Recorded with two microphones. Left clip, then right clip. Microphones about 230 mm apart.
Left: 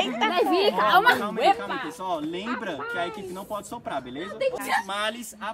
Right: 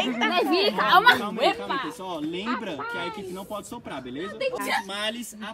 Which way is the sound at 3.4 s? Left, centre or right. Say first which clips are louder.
Left 2 dB; centre.